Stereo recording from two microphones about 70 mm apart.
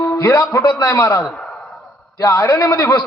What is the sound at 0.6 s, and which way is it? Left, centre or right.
Speech, left.